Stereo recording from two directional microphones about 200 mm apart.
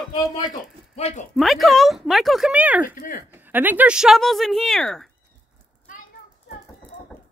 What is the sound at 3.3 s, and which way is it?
Speech, 10° right (ahead or behind).